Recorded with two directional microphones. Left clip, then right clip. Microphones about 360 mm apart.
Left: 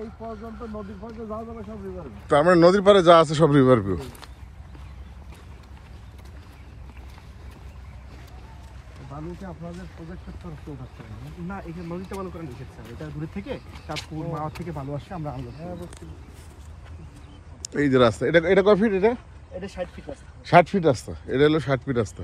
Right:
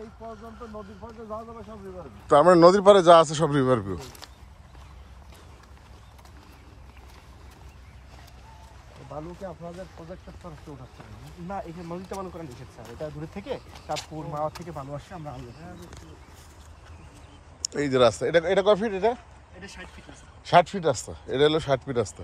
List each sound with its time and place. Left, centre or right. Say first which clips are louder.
0.0 s a man's voice: left 4 dB; centre
11.4 s speech: right 2 dB; right
13.8 s a man's voice: even; centre
17.6 s a man's voice: left 2 dB; centre
19.6 s speech: left 8 dB; centre
20.4 s a man's voice: left 3 dB; centre